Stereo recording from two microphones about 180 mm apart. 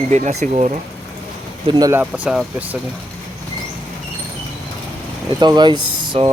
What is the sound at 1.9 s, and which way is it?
Speech, 10° right (ahead or behind).